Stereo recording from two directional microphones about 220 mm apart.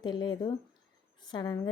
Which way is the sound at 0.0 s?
20° left (ahead or behind).